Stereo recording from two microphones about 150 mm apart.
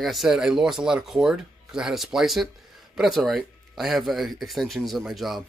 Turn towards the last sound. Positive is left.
turn(degrees=0)  # may be behind; listen again after turning